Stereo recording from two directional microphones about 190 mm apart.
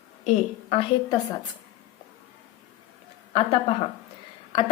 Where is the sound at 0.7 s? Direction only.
30° left (ahead or behind).